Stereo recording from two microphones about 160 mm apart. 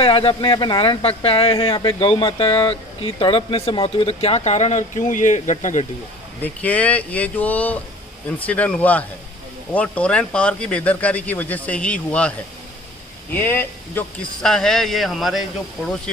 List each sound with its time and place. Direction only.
0.0 s speech: 35° left (ahead or behind); by 5.9 s 50° left (ahead or behind)
6.4 s speech: 10° left (ahead or behind)
14.4 s speech: 5° left (ahead or behind)